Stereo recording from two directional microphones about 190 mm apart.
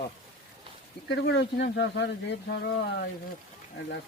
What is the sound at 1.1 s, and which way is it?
Speech, 65° left (ahead or behind).